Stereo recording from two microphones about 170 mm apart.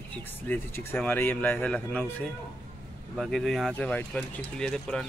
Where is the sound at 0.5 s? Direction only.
10° left (ahead or behind).